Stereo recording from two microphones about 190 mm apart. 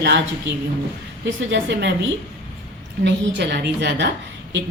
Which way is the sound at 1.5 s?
65° right (ahead or behind).